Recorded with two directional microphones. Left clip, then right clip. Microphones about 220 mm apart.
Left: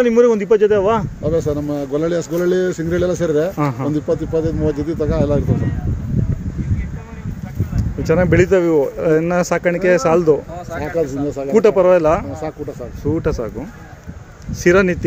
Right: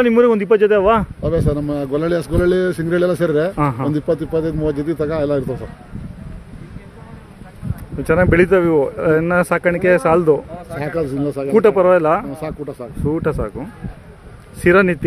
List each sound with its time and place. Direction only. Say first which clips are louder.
0.0 s speech: even; 15° right (ahead or behind)
1.2 s a man's voice: left 1 dB; 45° right (ahead or behind)
3.5 s speech: right 1 dB; 10° right (ahead or behind)
3.9 s speech: even; 40° right (ahead or behind)
8.0 s speech: right 1 dB; 10° right (ahead or behind)
10.8 s a man's voice: left 1 dB; 45° right (ahead or behind)
11.5 s speech: even; 10° right (ahead or behind)